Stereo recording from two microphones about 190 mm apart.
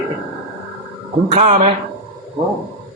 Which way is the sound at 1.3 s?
35° right (ahead or behind).